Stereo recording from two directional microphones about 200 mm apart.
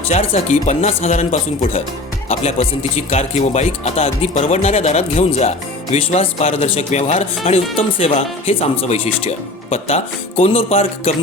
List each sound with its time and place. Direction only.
0.1 s speech: 35° left (ahead or behind)